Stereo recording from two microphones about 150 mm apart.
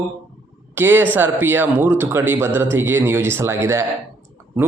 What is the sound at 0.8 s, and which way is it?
A man's voice, 15° right (ahead or behind).